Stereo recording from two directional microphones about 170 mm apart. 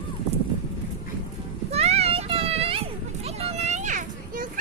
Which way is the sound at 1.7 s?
40° right (ahead or behind).